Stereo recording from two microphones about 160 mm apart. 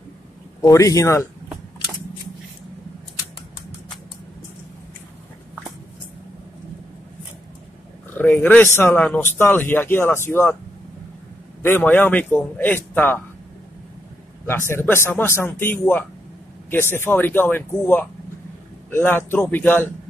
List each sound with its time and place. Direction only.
0.6 s speech: 20° left (ahead or behind)
8.1 s a man's voice: 10° left (ahead or behind)
11.6 s a man's voice: 10° left (ahead or behind)
14.4 s a man's voice: 15° left (ahead or behind)